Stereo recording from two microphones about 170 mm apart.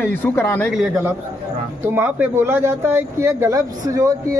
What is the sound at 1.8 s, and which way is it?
Speech, 10° right (ahead or behind).